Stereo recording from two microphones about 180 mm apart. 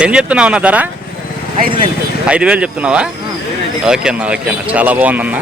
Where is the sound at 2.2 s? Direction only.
5° right (ahead or behind).